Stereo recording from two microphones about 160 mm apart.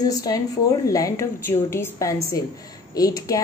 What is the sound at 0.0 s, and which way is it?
A woman's voice, 25° left (ahead or behind).